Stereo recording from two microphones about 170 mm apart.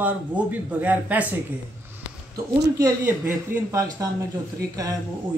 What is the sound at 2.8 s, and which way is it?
Speech, 20° right (ahead or behind).